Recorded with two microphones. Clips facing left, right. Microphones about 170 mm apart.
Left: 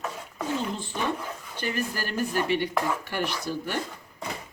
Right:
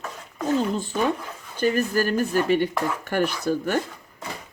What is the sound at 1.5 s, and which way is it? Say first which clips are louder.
Speech: right 9 dB; 45° right (ahead or behind).